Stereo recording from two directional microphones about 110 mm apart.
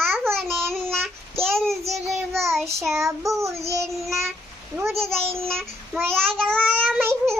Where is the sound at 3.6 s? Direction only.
25° right (ahead or behind).